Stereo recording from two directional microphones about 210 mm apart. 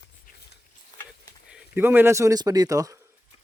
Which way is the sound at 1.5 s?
5° right (ahead or behind).